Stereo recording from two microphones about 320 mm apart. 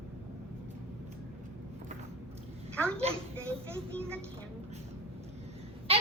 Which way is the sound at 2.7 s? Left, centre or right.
Centre.